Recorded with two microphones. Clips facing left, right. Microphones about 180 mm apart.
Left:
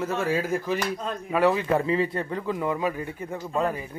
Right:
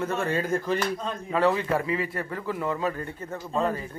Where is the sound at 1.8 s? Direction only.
25° left (ahead or behind).